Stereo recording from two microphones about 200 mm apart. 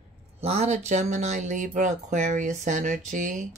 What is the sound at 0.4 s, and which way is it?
Speech, 30° right (ahead or behind).